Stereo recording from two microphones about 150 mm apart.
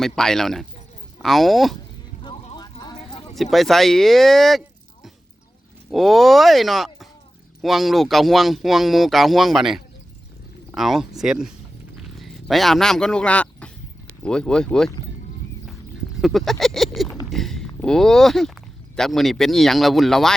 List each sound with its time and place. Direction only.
0.0 s speech: 5° left (ahead or behind)
2.2 s vehicle: 30° left (ahead or behind)
3.3 s speech: centre (ahead or behind)
5.9 s speech: centre (ahead or behind)
16.2 s speech: centre (ahead or behind)